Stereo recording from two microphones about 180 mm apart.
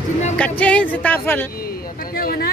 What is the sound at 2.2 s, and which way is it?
Vehicle, 60° left (ahead or behind).